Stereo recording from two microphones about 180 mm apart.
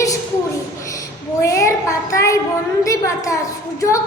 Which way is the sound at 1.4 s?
15° left (ahead or behind).